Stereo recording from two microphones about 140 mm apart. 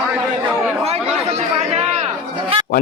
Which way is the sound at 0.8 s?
50° right (ahead or behind).